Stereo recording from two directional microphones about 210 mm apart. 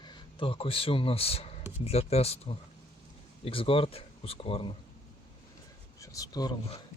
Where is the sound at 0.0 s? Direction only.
20° left (ahead or behind).